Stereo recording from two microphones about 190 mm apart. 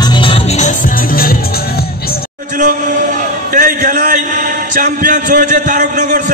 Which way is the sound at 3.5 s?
45° right (ahead or behind).